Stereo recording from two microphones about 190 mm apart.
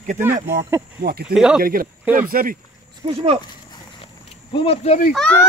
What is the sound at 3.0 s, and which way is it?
Speech, 30° right (ahead or behind).